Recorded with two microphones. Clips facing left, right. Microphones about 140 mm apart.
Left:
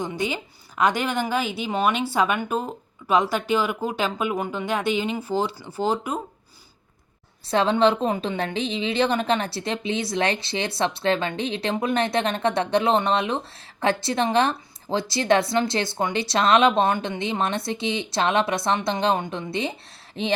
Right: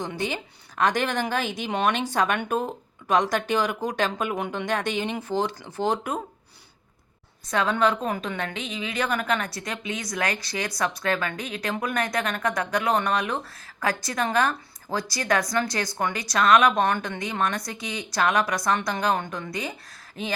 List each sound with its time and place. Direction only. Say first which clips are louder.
0.0 s speech: left 2 dB; 10° left (ahead or behind)
7.4 s a woman's voice: left 4 dB; 30° left (ahead or behind)